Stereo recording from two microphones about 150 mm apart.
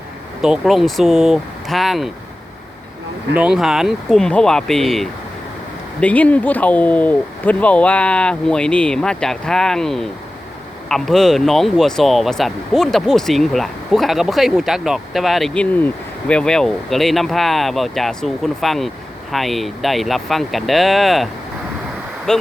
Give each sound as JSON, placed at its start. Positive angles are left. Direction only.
{"t": 0.4, "sound": "speech", "side_deg": 0}
{"t": 3.3, "sound": "speech", "side_deg": -5}
{"t": 22.3, "sound": "speech", "side_deg": 5}